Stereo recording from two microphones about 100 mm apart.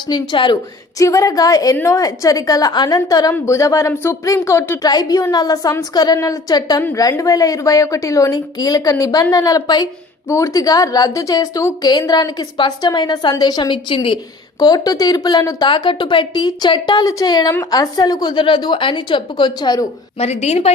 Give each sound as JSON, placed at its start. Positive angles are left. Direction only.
{"t": 0.1, "sound": "a woman's voice", "side_deg": 45}
{"t": 0.9, "sound": "a woman's voice", "side_deg": 35}
{"t": 4.8, "sound": "a woman's voice", "side_deg": 40}
{"t": 10.2, "sound": "a woman's voice", "side_deg": 30}
{"t": 14.6, "sound": "a woman's voice", "side_deg": 40}
{"t": 15.7, "sound": "a woman's voice", "side_deg": 55}
{"t": 20.1, "sound": "a woman's voice", "side_deg": 90}